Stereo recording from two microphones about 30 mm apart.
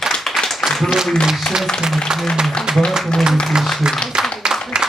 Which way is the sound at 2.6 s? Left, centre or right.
Left.